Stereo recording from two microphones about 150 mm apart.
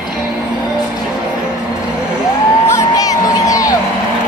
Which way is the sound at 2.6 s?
20° left (ahead or behind).